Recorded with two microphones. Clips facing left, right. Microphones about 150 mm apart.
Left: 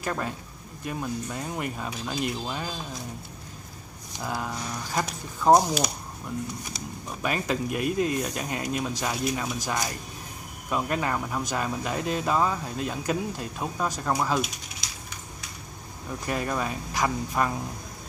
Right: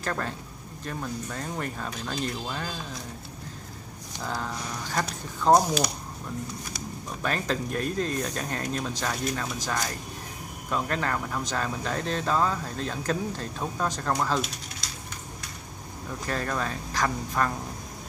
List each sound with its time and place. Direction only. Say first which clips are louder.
0.0 s speech: left 1 dB; 10° left (ahead or behind)
4.2 s speech: left 1 dB; 10° left (ahead or behind)
7.2 s speech: left 1 dB; 10° left (ahead or behind)
16.3 s speech: left 1 dB; 10° left (ahead or behind)